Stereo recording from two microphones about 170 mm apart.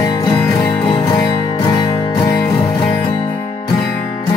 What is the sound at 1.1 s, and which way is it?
Music, 20° left (ahead or behind).